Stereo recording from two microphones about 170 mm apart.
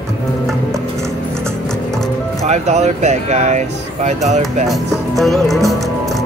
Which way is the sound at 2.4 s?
40° right (ahead or behind).